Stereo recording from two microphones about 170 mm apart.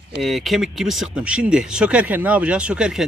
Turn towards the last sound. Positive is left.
turn(degrees=-5)  # may be behind; listen again after turning